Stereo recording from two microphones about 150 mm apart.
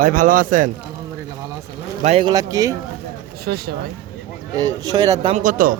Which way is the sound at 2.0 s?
50° right (ahead or behind).